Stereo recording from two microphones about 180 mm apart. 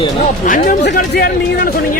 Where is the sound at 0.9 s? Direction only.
60° left (ahead or behind).